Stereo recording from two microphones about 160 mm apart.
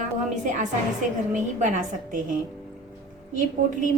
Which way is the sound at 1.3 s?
50° right (ahead or behind).